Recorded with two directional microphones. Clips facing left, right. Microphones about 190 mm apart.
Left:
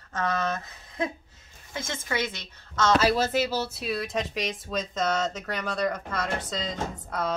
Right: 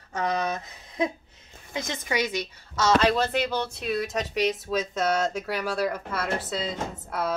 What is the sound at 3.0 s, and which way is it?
Speech, 10° left (ahead or behind).